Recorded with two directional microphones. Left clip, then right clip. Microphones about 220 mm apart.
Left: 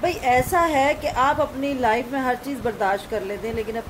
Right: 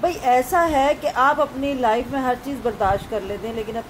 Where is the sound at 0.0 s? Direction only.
5° left (ahead or behind).